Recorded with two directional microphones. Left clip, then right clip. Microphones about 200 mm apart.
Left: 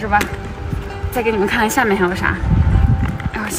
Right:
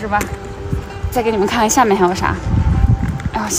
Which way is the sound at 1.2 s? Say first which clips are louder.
Right 1 dB; 30° right (ahead or behind).